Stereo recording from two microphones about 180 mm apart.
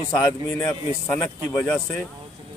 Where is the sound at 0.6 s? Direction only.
10° left (ahead or behind).